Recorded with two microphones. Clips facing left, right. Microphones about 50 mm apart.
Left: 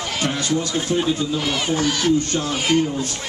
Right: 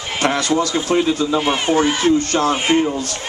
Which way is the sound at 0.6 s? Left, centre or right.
Right.